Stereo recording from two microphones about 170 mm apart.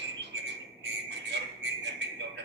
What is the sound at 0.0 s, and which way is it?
Bird, 90° right.